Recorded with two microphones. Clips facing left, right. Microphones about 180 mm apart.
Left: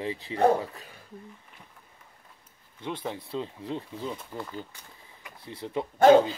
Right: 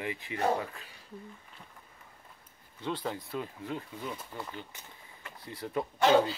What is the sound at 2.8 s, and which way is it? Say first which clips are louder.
Speech: left 1 dB; 20° left (ahead or behind).